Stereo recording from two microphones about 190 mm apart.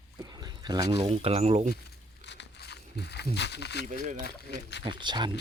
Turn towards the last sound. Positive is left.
turn(degrees=-25)  # may be behind; listen again after turning